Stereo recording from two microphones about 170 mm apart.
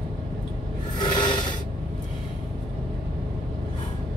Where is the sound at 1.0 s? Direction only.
25° left (ahead or behind).